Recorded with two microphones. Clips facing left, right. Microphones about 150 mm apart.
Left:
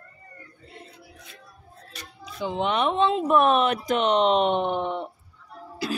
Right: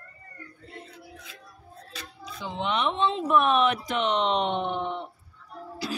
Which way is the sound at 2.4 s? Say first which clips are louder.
Left 4 dB; 50° left (ahead or behind).